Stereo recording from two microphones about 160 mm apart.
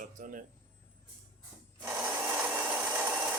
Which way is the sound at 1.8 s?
15° right (ahead or behind).